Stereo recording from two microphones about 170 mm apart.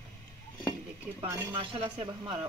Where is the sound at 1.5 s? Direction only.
30° right (ahead or behind).